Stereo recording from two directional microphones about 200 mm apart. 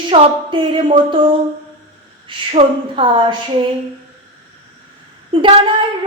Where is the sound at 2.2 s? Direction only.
25° right (ahead or behind).